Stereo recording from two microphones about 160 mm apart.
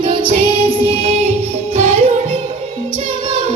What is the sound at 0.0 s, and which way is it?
Music, 35° right (ahead or behind).